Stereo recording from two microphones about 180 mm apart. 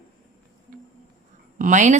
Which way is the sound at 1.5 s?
45° right (ahead or behind).